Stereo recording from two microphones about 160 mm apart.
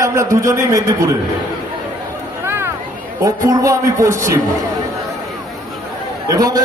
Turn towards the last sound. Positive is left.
turn(degrees=-25)  # may be behind; listen again after turning